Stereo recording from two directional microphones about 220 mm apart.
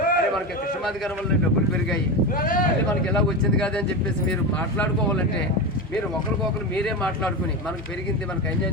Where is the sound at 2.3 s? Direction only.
40° left (ahead or behind).